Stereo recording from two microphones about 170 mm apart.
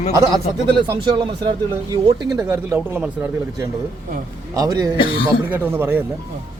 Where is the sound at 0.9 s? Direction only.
25° right (ahead or behind).